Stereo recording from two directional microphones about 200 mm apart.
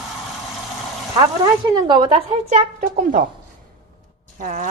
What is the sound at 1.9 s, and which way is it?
Speech, 25° right (ahead or behind).